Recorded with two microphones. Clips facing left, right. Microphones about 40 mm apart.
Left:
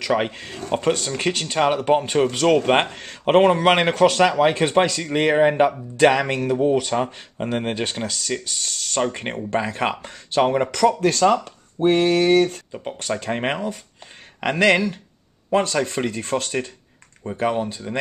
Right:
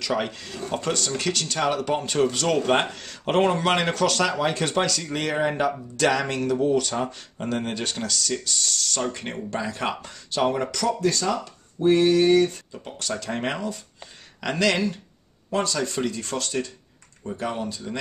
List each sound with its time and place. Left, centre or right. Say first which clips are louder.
0.0 s speech: left 5 dB; left
13.0 s speech: left 4 dB; left